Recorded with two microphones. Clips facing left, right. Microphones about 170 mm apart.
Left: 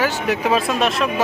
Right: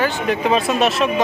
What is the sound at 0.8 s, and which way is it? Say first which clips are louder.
Speech: right 2 dB; 5° right (ahead or behind).